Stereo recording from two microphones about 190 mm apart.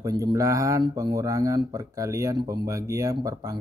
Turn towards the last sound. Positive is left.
turn(degrees=-20)  # may be behind; listen again after turning